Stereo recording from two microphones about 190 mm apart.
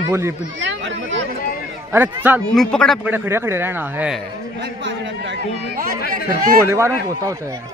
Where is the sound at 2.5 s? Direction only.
5° left (ahead or behind).